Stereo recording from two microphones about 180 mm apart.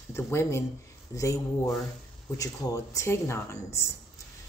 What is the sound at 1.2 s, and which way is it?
Speech, 15° left (ahead or behind).